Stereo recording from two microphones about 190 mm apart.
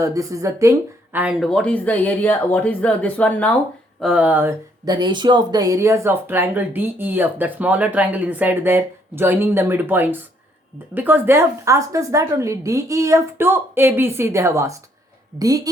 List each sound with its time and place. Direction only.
0.0 s speech: 15° right (ahead or behind); by 3.6 s 10° left (ahead or behind)
4.0 s a woman's voice: 5° right (ahead or behind)